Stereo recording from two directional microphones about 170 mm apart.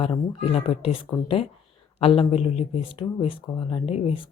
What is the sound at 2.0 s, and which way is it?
Speech, 35° left (ahead or behind).